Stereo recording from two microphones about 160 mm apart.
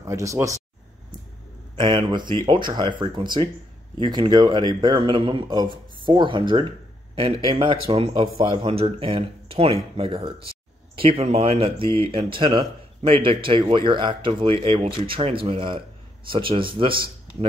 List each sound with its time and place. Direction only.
0.0 s speech: 20° right (ahead or behind)
1.9 s speech: 30° right (ahead or behind)